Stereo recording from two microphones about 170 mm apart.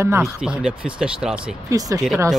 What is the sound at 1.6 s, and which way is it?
Speech, 20° right (ahead or behind).